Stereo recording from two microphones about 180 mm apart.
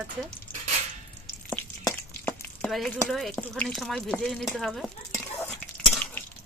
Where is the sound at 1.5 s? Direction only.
10° left (ahead or behind).